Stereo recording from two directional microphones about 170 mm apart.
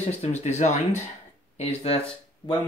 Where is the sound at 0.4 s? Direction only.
40° left (ahead or behind).